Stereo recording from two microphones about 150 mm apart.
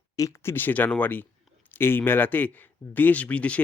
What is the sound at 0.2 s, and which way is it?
Speech, 20° left (ahead or behind).